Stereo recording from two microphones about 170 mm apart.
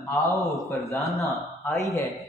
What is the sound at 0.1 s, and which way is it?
A man's voice, 20° left (ahead or behind).